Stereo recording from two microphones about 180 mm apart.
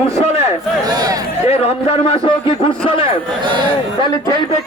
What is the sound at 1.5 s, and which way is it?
A man's voice, 30° left (ahead or behind).